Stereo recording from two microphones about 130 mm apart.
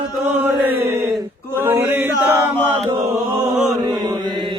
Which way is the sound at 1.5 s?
15° right (ahead or behind).